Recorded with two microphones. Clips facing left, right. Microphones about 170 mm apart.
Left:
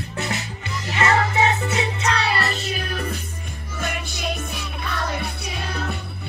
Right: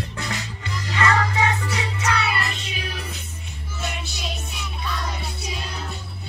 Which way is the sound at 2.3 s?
40° left (ahead or behind).